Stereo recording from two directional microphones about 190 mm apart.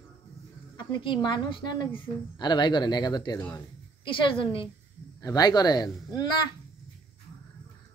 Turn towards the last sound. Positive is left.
turn(degrees=20)  # may be behind; listen again after turning